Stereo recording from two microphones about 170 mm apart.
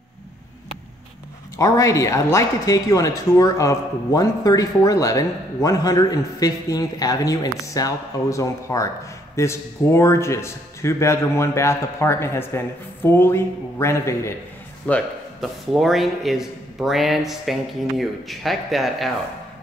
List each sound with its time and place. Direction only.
1.6 s speech: 20° left (ahead or behind)
14.9 s a man's voice: 5° left (ahead or behind)